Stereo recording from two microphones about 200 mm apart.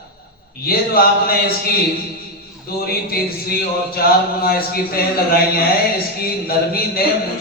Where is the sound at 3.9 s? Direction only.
50° left (ahead or behind).